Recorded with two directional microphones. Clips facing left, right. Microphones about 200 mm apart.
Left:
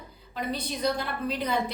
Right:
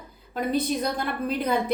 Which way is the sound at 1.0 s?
50° right (ahead or behind).